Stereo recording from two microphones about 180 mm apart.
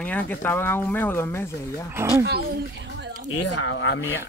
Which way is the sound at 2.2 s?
70° right (ahead or behind).